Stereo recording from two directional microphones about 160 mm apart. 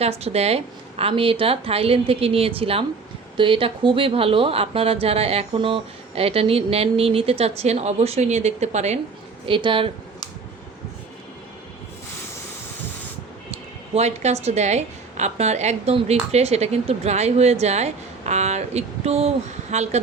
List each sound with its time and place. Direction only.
0.0 s speech: 40° right (ahead or behind)
9.5 s speech: 30° right (ahead or behind)
13.5 s a woman's voice: 40° right (ahead or behind)